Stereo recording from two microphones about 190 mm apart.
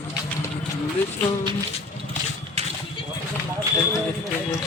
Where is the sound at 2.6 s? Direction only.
35° right (ahead or behind).